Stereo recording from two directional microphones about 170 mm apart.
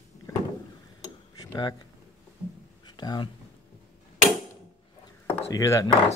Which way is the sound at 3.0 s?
25° left (ahead or behind).